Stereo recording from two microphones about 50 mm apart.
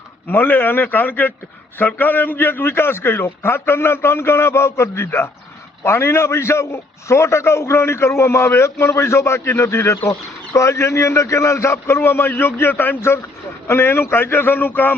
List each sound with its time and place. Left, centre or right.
0.3 s a man's voice: left
10.1 s speech: left
13.7 s a man's voice: left